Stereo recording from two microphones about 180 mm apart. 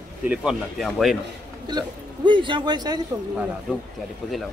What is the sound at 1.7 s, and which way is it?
A man's voice, 25° right (ahead or behind).